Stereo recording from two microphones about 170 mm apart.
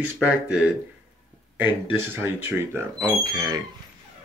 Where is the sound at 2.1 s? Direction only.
15° right (ahead or behind).